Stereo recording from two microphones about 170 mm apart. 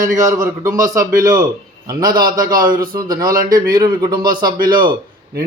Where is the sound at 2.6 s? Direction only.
55° right (ahead or behind).